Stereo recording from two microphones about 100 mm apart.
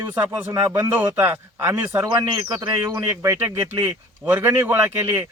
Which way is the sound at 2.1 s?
35° right (ahead or behind).